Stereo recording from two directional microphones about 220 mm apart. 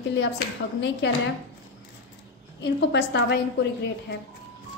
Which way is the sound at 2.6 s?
55° left (ahead or behind).